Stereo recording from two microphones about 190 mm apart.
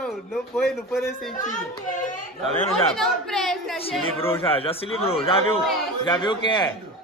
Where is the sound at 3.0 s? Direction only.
Centre (ahead or behind).